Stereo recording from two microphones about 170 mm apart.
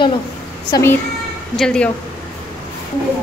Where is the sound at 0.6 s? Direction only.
20° left (ahead or behind).